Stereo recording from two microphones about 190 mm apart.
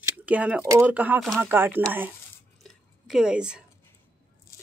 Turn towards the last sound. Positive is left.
turn(degrees=-5)  # may be behind; listen again after turning